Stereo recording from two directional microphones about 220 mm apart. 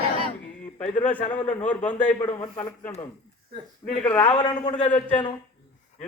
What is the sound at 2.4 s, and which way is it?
Speech, 25° left (ahead or behind).